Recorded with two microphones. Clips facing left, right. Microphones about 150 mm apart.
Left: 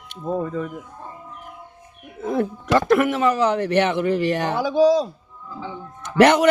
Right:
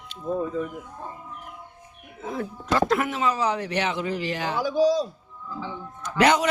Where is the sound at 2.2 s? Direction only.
60° left (ahead or behind).